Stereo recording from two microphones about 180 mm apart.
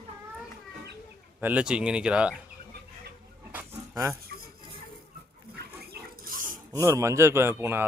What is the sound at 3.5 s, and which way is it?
Pig, 10° right (ahead or behind).